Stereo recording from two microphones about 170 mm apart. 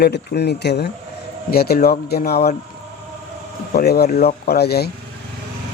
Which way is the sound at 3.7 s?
70° left (ahead or behind).